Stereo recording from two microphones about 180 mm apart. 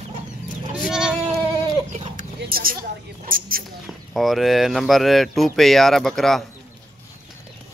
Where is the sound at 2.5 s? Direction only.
55° right (ahead or behind).